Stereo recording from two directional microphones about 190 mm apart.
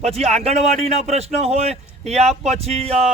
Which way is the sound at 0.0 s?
35° right (ahead or behind).